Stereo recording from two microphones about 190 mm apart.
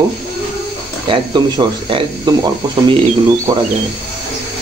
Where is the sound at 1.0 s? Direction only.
25° right (ahead or behind).